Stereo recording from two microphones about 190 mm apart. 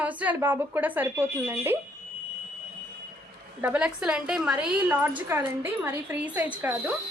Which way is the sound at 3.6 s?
5° right (ahead or behind).